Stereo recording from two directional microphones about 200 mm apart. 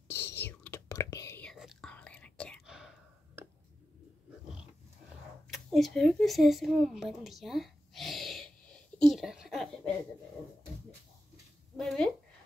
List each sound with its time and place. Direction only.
0.1 s whispering: 60° left (ahead or behind)
0.5 s whispering: 10° left (ahead or behind)
5.5 s a sound: centre (ahead or behind)
11.7 s speech: centre (ahead or behind)